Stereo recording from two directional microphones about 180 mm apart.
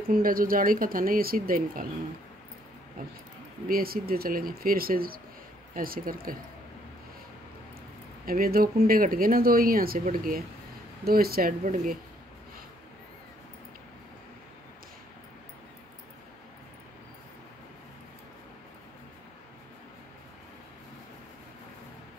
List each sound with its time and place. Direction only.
0.1 s speech: 50° right (ahead or behind)
3.0 s speech: 50° right (ahead or behind)
8.3 s speech: 55° right (ahead or behind)